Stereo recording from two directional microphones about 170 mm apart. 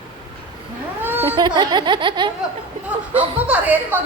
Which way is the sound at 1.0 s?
10° right (ahead or behind).